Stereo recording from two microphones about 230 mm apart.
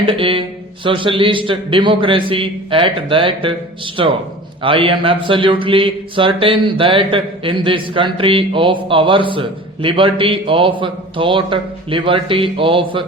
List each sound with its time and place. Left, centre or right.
0.0 s speech: right